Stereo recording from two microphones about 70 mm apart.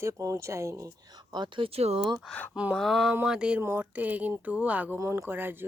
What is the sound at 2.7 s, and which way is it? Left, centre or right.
Speech, centre.